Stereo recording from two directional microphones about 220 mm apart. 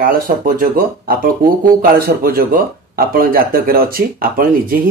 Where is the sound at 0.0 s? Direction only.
40° right (ahead or behind).